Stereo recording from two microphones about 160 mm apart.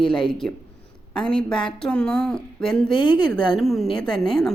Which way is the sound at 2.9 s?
30° left (ahead or behind).